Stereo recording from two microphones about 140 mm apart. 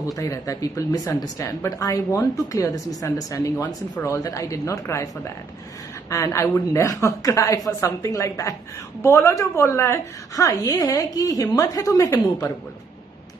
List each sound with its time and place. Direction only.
0.2 s a woman's voice: 20° left (ahead or behind)